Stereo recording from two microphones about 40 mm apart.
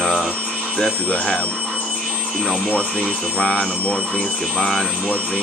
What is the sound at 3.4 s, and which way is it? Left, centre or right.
Speech, left.